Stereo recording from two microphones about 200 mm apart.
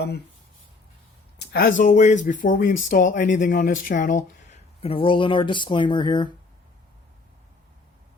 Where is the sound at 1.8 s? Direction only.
35° left (ahead or behind).